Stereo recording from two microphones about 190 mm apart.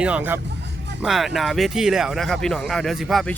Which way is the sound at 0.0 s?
5° right (ahead or behind).